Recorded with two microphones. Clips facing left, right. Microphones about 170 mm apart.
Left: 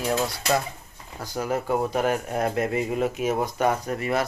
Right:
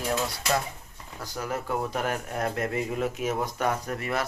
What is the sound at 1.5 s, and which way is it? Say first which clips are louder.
Speech: left 5 dB; 20° left (ahead or behind).